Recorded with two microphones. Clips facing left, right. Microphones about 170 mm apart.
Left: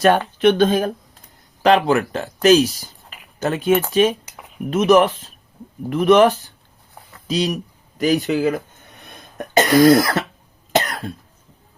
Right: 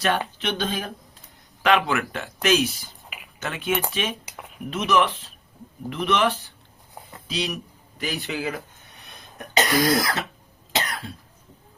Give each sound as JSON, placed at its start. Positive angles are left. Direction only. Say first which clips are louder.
{"t": 0.0, "sound": "speech", "louder": "left 10 dB", "side_deg": 50}
{"t": 1.6, "sound": "speech", "louder": "left 6 dB", "side_deg": 35}
{"t": 10.7, "sound": "cough", "louder": "left 8 dB", "side_deg": 50}